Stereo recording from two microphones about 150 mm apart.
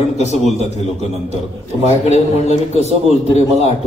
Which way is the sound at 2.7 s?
45° right (ahead or behind).